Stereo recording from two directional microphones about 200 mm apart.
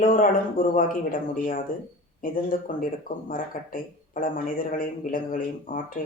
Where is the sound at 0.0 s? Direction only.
40° left (ahead or behind).